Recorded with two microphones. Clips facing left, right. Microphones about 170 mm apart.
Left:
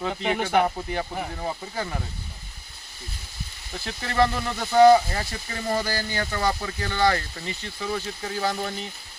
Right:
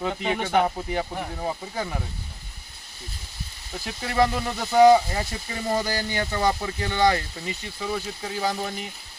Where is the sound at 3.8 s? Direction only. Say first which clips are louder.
Even; 15° right (ahead or behind).